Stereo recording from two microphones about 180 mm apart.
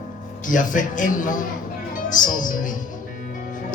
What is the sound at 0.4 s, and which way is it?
Music, 45° left (ahead or behind).